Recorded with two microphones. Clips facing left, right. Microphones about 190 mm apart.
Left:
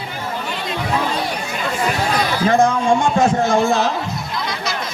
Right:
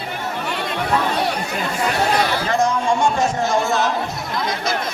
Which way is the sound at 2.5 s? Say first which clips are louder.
Left 5 dB; 55° left (ahead or behind).